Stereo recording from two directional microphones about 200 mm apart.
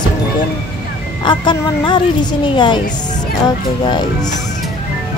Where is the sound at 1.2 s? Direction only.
25° left (ahead or behind).